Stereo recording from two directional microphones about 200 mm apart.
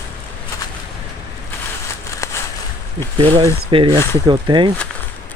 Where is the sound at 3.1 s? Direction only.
25° right (ahead or behind).